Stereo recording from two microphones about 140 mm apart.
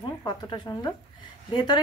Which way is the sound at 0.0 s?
30° left (ahead or behind).